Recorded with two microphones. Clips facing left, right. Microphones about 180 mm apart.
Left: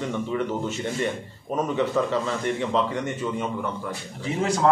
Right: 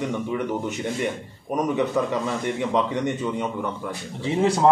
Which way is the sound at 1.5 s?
15° right (ahead or behind).